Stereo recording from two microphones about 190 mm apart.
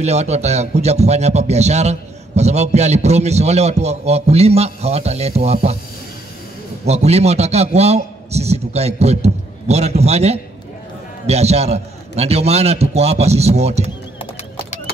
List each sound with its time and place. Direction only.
0.0 s speech: 35° right (ahead or behind)
6.9 s speech: 35° right (ahead or behind)